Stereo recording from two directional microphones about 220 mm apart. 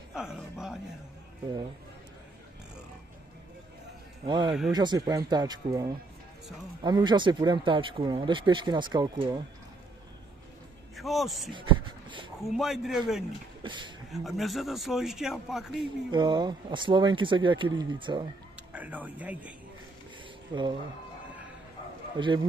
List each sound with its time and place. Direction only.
0.1 s a sound: 5° right (ahead or behind)
4.3 s speech: 20° right (ahead or behind)
11.0 s a man's voice: centre (ahead or behind)
13.6 s speech: 20° right (ahead or behind)
14.1 s a man's voice: centre (ahead or behind)
16.1 s speech: 20° right (ahead or behind)
18.7 s speech: 5° right (ahead or behind)
20.5 s speech: 20° right (ahead or behind)
22.1 s a man's voice: 20° right (ahead or behind)